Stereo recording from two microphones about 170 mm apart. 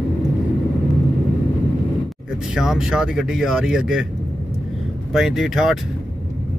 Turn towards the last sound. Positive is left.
turn(degrees=0)  # may be behind; listen again after turning